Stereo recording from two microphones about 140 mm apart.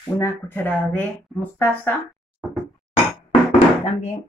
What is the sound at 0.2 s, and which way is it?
Speech, 15° left (ahead or behind).